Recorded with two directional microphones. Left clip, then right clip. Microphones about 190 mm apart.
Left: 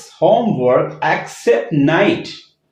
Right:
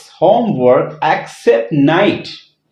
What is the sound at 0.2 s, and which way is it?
Speech, 40° right (ahead or behind).